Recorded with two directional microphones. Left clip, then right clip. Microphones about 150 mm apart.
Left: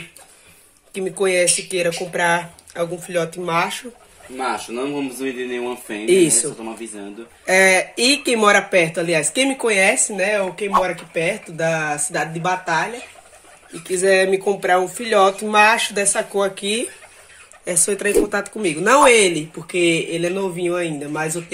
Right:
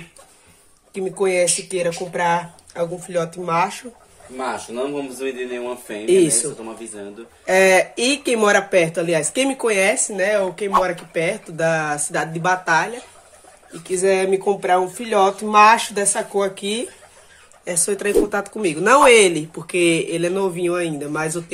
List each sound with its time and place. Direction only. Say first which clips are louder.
0.9 s speech: left 1 dB; centre (ahead or behind)
5.2 s speech: even; 35° left (ahead or behind)
6.0 s speech: even; centre (ahead or behind)